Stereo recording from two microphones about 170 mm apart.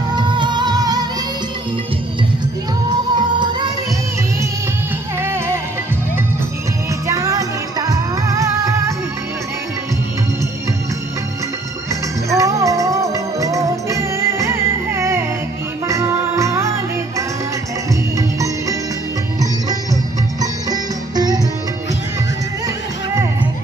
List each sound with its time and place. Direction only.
0.1 s music: 25° right (ahead or behind)
2.9 s music: 25° right (ahead or behind)
5.2 s music: 15° right (ahead or behind)
7.1 s music: 20° right (ahead or behind)
12.4 s music: 20° right (ahead or behind)
18.1 s music: 20° right (ahead or behind)